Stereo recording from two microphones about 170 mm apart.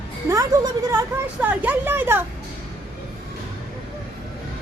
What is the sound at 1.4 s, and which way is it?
Speech, 10° right (ahead or behind).